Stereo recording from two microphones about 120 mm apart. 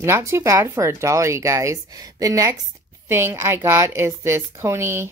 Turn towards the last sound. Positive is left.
turn(degrees=-20)  # may be behind; listen again after turning